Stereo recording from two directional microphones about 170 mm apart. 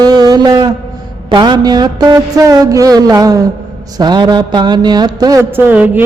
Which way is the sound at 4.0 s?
25° right (ahead or behind).